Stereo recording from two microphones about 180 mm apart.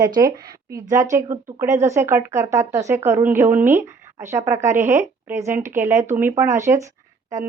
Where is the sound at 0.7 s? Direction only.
15° right (ahead or behind).